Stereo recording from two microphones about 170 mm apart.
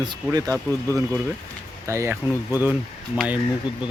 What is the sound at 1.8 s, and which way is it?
Speech, 15° right (ahead or behind).